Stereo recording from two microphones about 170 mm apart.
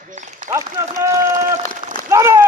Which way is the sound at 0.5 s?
20° right (ahead or behind).